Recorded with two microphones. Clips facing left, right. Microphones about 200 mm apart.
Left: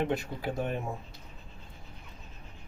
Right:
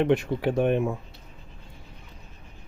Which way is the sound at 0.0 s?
75° right (ahead or behind).